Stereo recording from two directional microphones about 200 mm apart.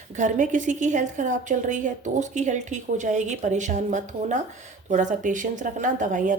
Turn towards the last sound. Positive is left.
turn(degrees=-40)  # may be behind; listen again after turning